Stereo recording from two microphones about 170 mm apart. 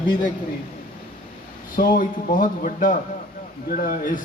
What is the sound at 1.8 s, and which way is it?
A man's voice, 55° left (ahead or behind).